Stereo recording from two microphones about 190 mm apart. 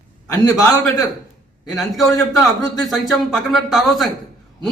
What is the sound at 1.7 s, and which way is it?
Speech, centre (ahead or behind).